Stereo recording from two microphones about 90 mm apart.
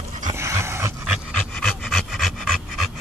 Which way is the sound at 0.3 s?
30° right (ahead or behind).